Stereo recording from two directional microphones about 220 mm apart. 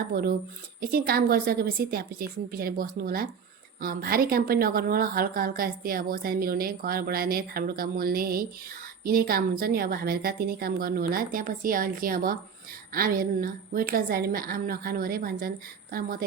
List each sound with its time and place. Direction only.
0.1 s a woman's voice: 45° right (ahead or behind)